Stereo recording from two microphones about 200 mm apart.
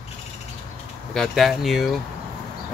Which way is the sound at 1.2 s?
Centre (ahead or behind).